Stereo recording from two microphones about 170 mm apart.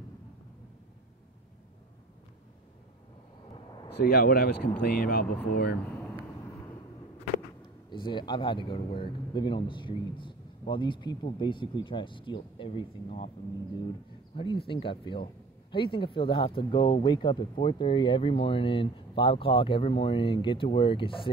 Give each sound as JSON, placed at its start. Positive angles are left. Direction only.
{"t": 3.9, "sound": "speech", "side_deg": 65}
{"t": 7.9, "sound": "speech", "side_deg": 30}
{"t": 14.3, "sound": "speech", "side_deg": 30}